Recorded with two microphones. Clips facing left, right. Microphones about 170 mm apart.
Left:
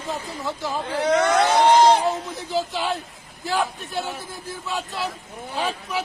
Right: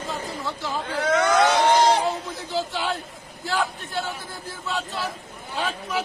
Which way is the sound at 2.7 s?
15° left (ahead or behind).